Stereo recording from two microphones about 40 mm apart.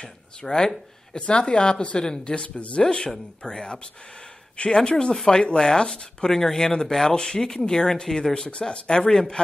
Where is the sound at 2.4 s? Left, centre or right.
Left.